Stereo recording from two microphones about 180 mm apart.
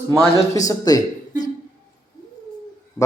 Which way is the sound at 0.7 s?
20° left (ahead or behind).